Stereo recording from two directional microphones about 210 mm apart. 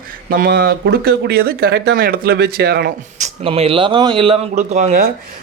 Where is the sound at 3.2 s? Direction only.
30° right (ahead or behind).